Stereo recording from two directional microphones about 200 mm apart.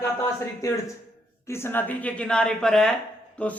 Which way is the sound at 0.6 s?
15° left (ahead or behind).